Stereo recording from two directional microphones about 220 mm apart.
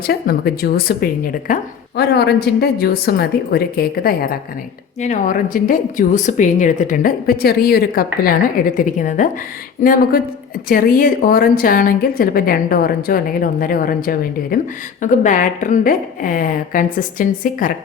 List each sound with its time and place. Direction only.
0.0 s a woman's voice: 45° left (ahead or behind)